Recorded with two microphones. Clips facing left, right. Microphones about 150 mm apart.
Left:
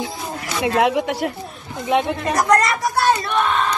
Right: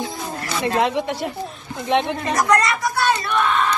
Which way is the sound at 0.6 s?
10° left (ahead or behind).